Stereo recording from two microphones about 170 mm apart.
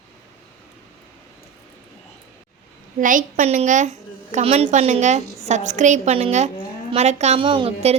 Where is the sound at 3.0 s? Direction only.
50° right (ahead or behind); by 7.9 s 30° right (ahead or behind).